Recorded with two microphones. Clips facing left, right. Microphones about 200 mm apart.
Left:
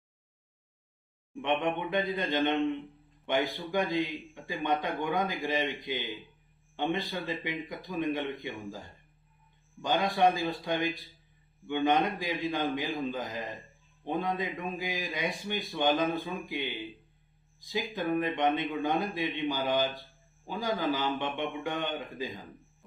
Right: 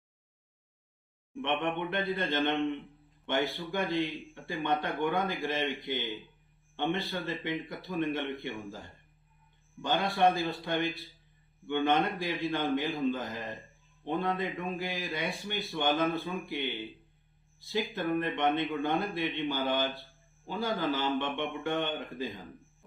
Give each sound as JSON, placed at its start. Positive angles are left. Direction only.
{"t": 1.4, "sound": "a man's voice", "side_deg": 15}
{"t": 9.8, "sound": "a man's voice", "side_deg": 15}
{"t": 17.7, "sound": "a man's voice", "side_deg": 10}